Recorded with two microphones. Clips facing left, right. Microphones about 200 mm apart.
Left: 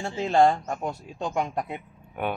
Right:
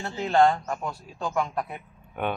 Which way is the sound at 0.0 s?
25° left (ahead or behind).